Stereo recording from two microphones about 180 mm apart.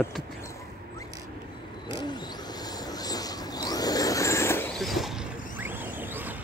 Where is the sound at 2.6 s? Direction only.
20° left (ahead or behind).